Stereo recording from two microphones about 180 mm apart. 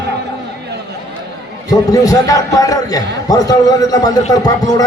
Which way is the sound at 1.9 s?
20° left (ahead or behind).